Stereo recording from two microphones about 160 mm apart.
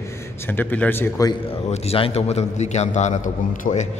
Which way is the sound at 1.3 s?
40° left (ahead or behind).